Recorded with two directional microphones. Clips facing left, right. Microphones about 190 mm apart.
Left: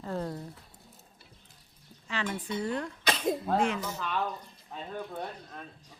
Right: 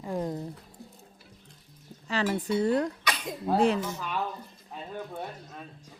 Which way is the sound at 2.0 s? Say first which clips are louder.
Right 6 dB; 40° right (ahead or behind).